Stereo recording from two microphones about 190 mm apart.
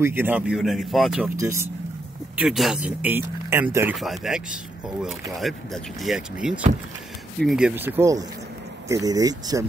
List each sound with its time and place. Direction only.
0.0 s speech: 10° right (ahead or behind)
1.4 s speech: 15° right (ahead or behind)
2.3 s speech: centre (ahead or behind); by 9.7 s 20° right (ahead or behind)